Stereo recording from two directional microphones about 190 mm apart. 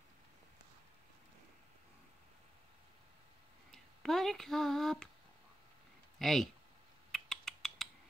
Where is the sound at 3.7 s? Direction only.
Centre (ahead or behind).